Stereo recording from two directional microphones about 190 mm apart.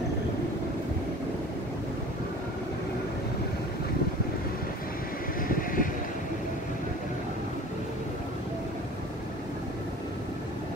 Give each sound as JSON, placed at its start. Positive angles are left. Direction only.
{"t": 5.5, "sound": "vehicle", "side_deg": 45}